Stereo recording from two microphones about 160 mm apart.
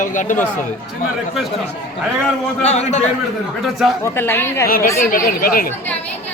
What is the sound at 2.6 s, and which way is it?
Speech, 45° left (ahead or behind).